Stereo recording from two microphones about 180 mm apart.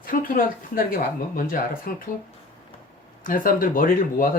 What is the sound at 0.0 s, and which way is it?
Speech, 50° left (ahead or behind).